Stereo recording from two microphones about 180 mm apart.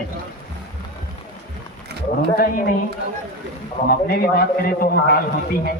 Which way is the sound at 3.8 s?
55° left (ahead or behind).